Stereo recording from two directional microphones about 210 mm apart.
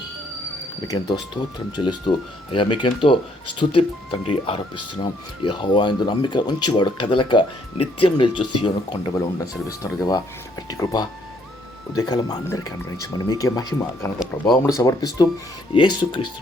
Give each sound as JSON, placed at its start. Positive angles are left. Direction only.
{"t": 0.9, "sound": "speech", "side_deg": 20}